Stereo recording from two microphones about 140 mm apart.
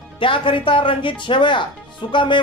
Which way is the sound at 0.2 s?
40° left (ahead or behind).